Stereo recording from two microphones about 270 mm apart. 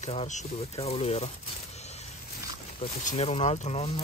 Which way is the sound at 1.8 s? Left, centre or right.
Left.